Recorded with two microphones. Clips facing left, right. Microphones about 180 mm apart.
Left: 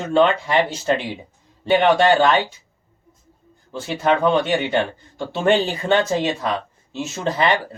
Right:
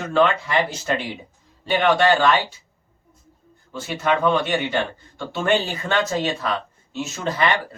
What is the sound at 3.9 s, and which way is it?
Speech, 30° left (ahead or behind).